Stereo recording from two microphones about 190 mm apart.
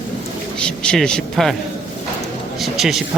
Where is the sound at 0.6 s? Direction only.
5° left (ahead or behind).